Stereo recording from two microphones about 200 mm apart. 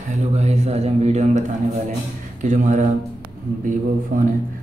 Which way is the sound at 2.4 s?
35° right (ahead or behind).